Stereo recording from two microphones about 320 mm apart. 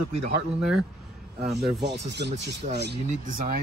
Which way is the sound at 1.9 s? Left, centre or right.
Right.